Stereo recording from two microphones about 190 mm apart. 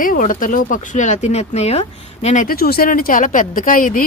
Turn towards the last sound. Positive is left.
turn(degrees=45)  # may be behind; listen again after turning